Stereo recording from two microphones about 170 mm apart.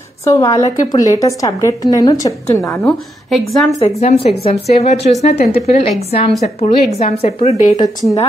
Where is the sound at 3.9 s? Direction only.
35° left (ahead or behind).